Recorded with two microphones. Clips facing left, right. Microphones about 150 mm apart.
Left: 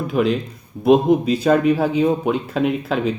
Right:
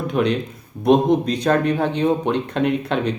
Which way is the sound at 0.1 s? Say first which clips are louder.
Left 1 dB; centre (ahead or behind).